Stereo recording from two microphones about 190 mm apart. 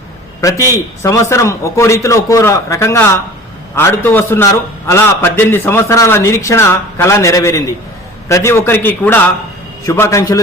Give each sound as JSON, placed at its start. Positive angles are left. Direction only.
{"t": 0.4, "sound": "a man's voice", "side_deg": 15}